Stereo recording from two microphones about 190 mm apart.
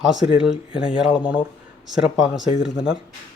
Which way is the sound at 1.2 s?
25° left (ahead or behind).